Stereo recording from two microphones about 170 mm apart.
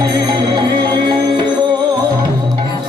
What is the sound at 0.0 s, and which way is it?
Music, 25° right (ahead or behind).